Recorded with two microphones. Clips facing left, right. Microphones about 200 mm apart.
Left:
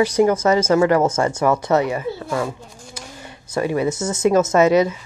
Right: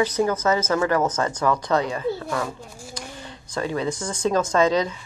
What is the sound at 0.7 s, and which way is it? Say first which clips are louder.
Speech: left 6 dB; 25° left (ahead or behind).